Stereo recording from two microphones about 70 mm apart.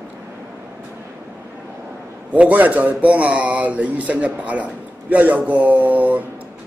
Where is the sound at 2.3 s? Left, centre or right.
Right.